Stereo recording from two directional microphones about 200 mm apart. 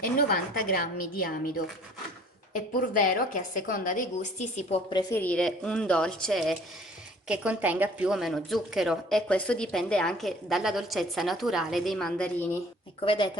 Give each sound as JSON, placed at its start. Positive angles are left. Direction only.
{"t": 0.2, "sound": "a woman's voice", "side_deg": 50}
{"t": 5.1, "sound": "a woman's voice", "side_deg": 5}
{"t": 13.0, "sound": "speech", "side_deg": 25}